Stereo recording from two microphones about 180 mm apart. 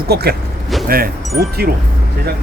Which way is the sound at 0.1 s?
60° right (ahead or behind).